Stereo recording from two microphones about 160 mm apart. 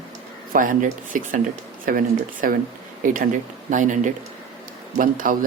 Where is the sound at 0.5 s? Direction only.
55° right (ahead or behind).